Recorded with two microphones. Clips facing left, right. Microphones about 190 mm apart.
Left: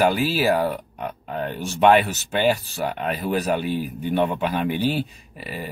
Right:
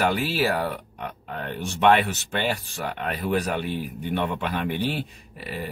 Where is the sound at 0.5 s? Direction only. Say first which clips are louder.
Left 5 dB; 40° left (ahead or behind).